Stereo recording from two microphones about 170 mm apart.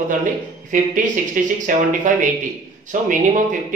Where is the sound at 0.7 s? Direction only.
50° right (ahead or behind).